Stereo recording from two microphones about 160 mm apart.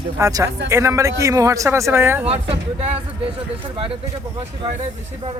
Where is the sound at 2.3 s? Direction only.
40° right (ahead or behind).